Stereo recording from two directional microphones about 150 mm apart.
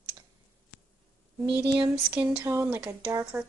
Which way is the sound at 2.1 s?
10° right (ahead or behind).